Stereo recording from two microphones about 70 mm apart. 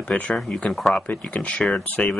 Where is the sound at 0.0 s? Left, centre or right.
Centre.